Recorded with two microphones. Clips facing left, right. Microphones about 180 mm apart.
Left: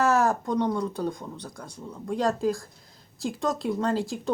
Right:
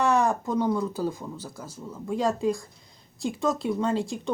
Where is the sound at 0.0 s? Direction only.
5° left (ahead or behind).